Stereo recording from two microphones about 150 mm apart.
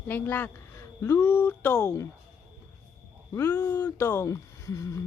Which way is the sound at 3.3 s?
15° left (ahead or behind).